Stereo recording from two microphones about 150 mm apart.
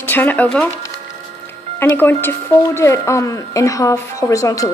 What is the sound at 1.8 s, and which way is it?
A woman's voice, 15° left (ahead or behind).